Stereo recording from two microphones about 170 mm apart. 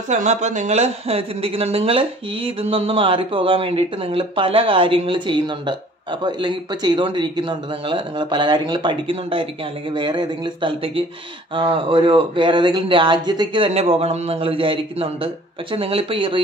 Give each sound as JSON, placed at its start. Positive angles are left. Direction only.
{"t": 0.1, "sound": "speech", "side_deg": -45}